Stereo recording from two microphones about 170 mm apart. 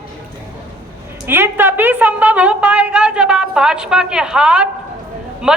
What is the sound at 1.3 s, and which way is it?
A woman's voice, 10° right (ahead or behind).